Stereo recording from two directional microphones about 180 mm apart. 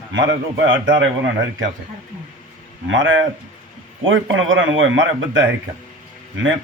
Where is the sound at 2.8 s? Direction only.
90° right.